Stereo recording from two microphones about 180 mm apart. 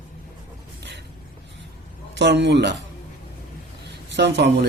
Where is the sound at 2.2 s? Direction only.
70° right (ahead or behind).